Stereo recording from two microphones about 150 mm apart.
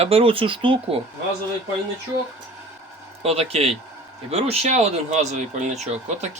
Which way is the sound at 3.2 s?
45° right (ahead or behind).